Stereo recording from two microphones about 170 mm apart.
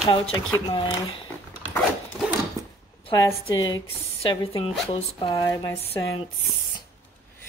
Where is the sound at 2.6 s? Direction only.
20° right (ahead or behind).